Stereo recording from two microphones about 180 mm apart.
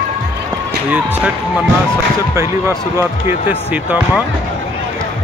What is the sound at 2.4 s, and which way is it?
Speech, 15° right (ahead or behind).